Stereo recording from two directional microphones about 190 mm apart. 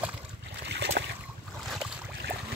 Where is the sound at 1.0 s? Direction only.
55° right (ahead or behind).